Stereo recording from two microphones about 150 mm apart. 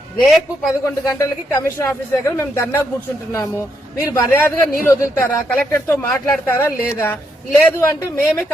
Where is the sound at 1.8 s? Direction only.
15° left (ahead or behind).